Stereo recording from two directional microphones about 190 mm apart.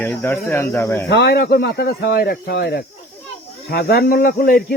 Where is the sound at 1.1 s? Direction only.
60° left (ahead or behind).